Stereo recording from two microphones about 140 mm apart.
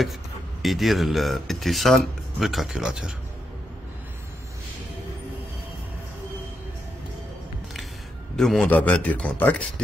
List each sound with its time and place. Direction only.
0.6 s speech: centre (ahead or behind)
8.4 s speech: 5° left (ahead or behind)